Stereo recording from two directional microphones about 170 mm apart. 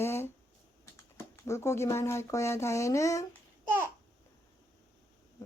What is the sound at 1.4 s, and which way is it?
Speech, 15° left (ahead or behind).